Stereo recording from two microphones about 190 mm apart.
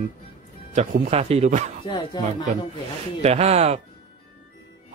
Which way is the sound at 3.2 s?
35° right (ahead or behind).